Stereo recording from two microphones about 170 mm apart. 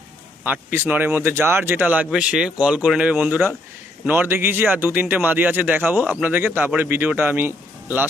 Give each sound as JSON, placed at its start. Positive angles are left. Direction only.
{"t": 0.4, "sound": "speech", "side_deg": -10}